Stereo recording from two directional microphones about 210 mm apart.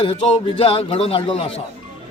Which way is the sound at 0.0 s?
25° left (ahead or behind).